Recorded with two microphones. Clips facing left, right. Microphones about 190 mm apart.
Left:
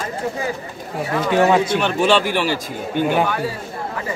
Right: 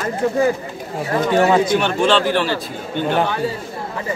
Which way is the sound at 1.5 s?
Centre (ahead or behind).